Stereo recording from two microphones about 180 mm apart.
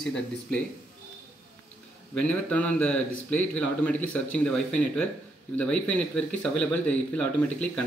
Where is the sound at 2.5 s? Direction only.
10° left (ahead or behind).